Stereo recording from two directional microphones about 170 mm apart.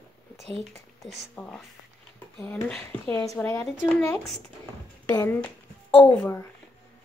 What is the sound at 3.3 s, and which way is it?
Speech, 20° left (ahead or behind).